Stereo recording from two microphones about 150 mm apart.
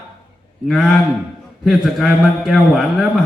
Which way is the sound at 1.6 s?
Centre (ahead or behind).